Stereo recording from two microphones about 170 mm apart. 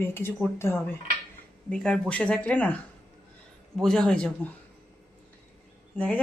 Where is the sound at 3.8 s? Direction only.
5° left (ahead or behind).